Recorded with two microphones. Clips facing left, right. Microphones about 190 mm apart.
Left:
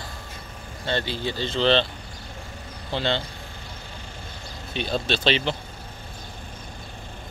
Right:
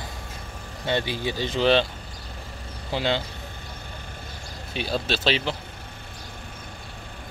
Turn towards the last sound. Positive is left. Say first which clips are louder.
# left 1 dB
turn(degrees=-5)  # may be behind; listen again after turning